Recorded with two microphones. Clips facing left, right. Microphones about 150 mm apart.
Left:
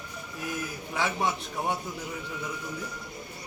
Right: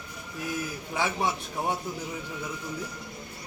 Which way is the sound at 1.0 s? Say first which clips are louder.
Even; 10° right (ahead or behind).